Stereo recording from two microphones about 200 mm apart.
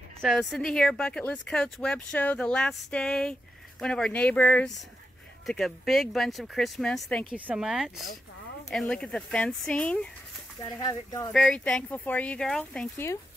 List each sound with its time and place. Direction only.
0.2 s speech: 5° left (ahead or behind)
10.8 s speech: 20° left (ahead or behind)
11.3 s speech: 5° left (ahead or behind)